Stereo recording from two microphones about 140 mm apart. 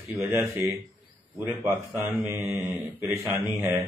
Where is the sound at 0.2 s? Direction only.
15° right (ahead or behind).